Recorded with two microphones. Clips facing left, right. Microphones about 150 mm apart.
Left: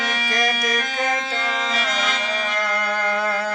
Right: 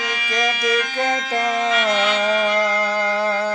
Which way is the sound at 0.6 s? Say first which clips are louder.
Right 4 dB; 45° left (ahead or behind).